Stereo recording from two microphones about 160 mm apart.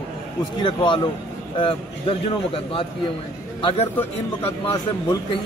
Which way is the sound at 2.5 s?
35° left (ahead or behind).